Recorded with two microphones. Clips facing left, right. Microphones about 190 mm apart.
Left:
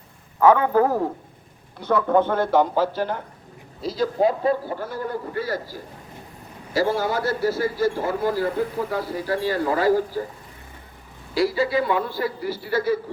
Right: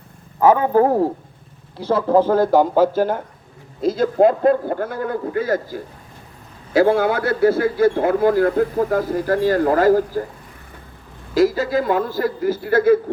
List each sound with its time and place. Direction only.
0.3 s a man's voice: 25° right (ahead or behind); by 10.2 s 50° right (ahead or behind)
11.3 s speech: 45° right (ahead or behind)